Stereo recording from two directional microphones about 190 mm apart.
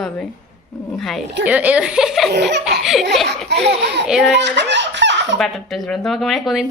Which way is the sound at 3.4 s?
65° right (ahead or behind).